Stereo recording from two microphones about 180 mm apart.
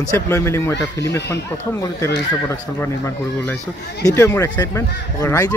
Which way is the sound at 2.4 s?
15° left (ahead or behind).